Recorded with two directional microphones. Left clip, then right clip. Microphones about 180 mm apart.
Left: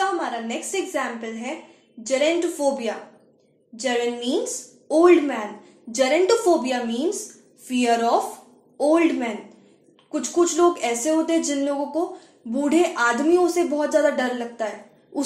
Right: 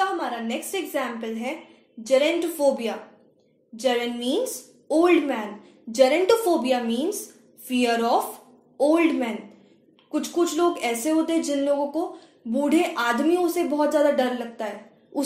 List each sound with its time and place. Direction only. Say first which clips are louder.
0.2 s a woman's voice: left 1 dB; 30° right (ahead or behind)